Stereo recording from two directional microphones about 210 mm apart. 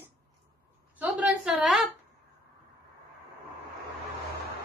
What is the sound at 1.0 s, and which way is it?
Speech, 5° right (ahead or behind).